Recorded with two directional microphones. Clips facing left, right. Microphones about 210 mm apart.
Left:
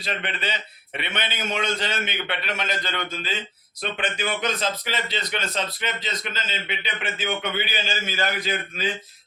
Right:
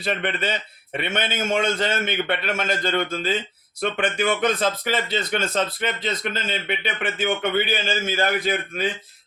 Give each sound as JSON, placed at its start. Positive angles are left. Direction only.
{"t": 0.0, "sound": "speech", "side_deg": -50}